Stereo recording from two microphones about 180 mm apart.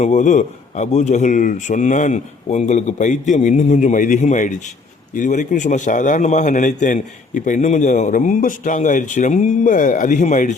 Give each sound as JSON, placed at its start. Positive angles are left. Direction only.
{"t": 0.0, "sound": "a man's voice", "side_deg": 40}